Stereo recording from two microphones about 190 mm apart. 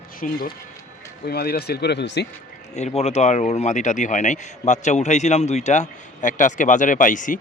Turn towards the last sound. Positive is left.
turn(degrees=45)  # may be behind; listen again after turning